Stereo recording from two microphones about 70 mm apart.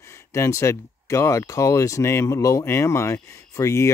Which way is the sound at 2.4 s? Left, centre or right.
Left.